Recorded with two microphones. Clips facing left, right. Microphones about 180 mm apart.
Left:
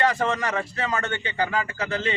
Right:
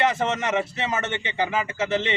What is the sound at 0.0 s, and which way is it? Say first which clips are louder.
A man's voice: even; 20° right (ahead or behind).